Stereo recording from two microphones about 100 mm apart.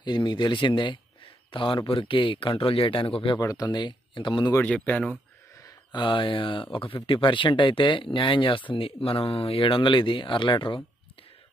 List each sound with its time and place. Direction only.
0.0 s speech: 50° left (ahead or behind)
3.3 s speech: 40° left (ahead or behind)
4.6 s speech: 10° left (ahead or behind)
5.9 s speech: 50° left (ahead or behind)